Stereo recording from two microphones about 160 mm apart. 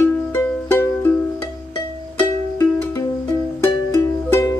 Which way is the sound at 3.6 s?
20° left (ahead or behind).